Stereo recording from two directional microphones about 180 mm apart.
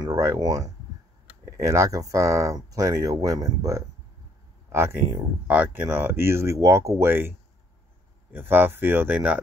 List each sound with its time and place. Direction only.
0.0 s speech: 15° right (ahead or behind)